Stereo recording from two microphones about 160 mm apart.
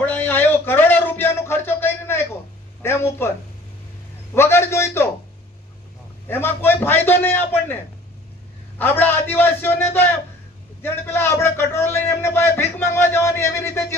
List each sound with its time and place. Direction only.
0.0 s a sound: 10° left (ahead or behind)
2.8 s a man's voice: 15° left (ahead or behind)
6.2 s a man's voice: 15° left (ahead or behind)